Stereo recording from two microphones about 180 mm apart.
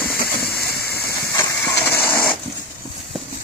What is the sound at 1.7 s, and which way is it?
Printer, 10° left (ahead or behind).